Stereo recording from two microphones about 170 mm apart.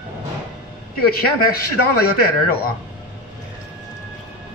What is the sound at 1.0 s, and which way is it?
A man's voice, 65° left (ahead or behind).